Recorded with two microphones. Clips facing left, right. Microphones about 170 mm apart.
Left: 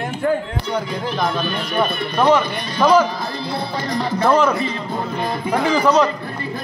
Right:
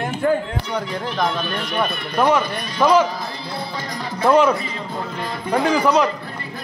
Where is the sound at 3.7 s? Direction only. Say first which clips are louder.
Left 6 dB; 65° left (ahead or behind).